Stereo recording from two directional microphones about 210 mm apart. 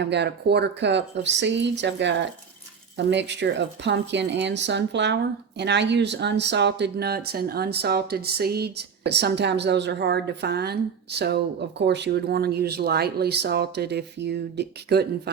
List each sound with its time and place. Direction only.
0.0 s a woman's voice: 55° right (ahead or behind)